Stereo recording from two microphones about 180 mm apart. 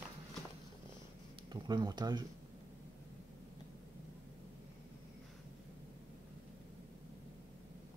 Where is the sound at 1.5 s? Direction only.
25° right (ahead or behind).